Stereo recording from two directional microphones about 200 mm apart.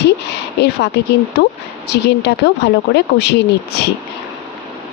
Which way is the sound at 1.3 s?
55° left (ahead or behind).